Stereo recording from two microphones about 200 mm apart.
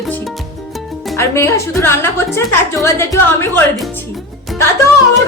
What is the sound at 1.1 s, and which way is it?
Speech, 15° left (ahead or behind).